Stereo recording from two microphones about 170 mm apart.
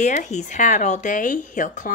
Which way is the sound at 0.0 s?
45° left (ahead or behind).